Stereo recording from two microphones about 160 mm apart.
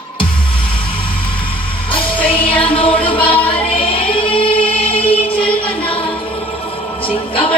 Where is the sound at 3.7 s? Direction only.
35° left (ahead or behind).